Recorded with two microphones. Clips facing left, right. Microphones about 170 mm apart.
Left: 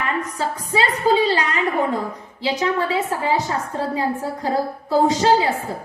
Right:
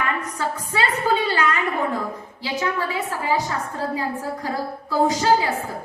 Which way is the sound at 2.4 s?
20° left (ahead or behind).